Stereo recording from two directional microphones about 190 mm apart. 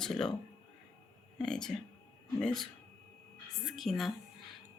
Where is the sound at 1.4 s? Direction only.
5° left (ahead or behind).